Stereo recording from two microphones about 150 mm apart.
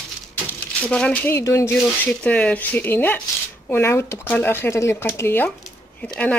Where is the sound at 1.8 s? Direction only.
10° left (ahead or behind).